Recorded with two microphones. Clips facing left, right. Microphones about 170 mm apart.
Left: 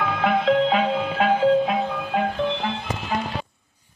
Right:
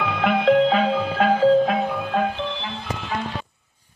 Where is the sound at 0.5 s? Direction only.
40° right (ahead or behind).